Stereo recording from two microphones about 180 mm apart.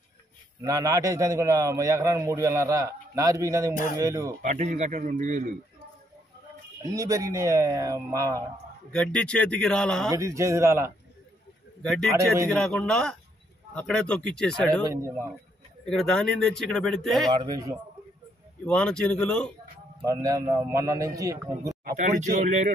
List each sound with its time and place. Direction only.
0.7 s a man's voice: 20° right (ahead or behind)
4.4 s speech: 40° right (ahead or behind)
6.8 s a man's voice: 20° right (ahead or behind)
8.9 s speech: 5° left (ahead or behind)
10.1 s a man's voice: 15° right (ahead or behind)
12.4 s speech: 5° left (ahead or behind)
14.9 s a man's voice: 15° right (ahead or behind)
15.9 s speech: centre (ahead or behind)
17.3 s a man's voice: 25° right (ahead or behind)
18.7 s speech: 5° left (ahead or behind)
20.1 s a man's voice: 20° right (ahead or behind)
21.8 s speech: 45° right (ahead or behind)